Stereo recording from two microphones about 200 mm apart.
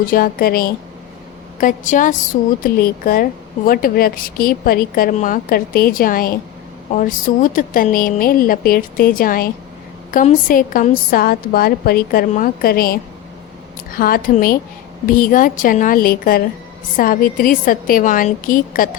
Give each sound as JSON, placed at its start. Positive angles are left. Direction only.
{"t": 0.0, "sound": "a woman's voice", "side_deg": 45}